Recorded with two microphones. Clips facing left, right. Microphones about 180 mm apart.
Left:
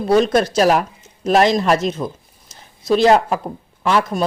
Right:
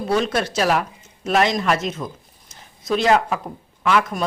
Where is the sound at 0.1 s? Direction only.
40° left (ahead or behind).